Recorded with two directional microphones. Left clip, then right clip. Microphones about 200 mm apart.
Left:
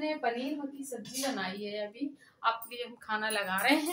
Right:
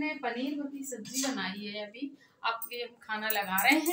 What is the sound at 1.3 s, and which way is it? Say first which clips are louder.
A woman's voice: left 1 dB; 25° left (ahead or behind).